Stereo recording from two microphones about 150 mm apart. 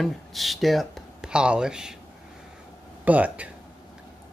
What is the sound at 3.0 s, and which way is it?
Speech, 10° right (ahead or behind).